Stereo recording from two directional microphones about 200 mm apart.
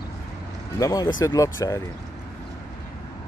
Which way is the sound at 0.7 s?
20° left (ahead or behind).